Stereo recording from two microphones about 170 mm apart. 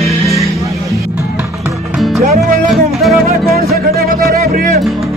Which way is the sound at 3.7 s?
65° right (ahead or behind).